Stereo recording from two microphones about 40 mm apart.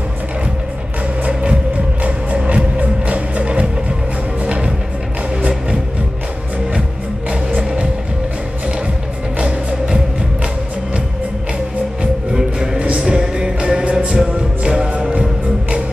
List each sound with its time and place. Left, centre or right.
1.2 s music: right
9.4 s music: right
12.7 s music: right
13.0 s music: centre